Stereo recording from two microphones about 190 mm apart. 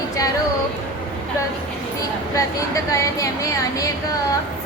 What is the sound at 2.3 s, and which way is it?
Speech, 15° left (ahead or behind).